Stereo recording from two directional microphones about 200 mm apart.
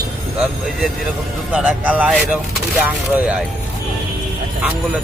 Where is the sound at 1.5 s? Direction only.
5° right (ahead or behind).